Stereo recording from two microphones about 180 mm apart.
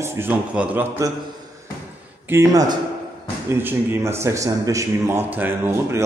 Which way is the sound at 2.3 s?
15° right (ahead or behind).